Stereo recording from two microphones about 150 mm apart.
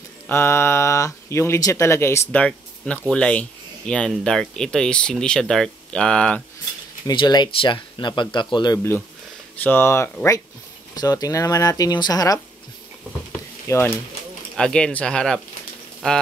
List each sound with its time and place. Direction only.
0.3 s speech: 15° left (ahead or behind)
7.1 s speech: 30° left (ahead or behind)
9.6 s speech: 15° left (ahead or behind)
13.7 s speech: 15° left (ahead or behind)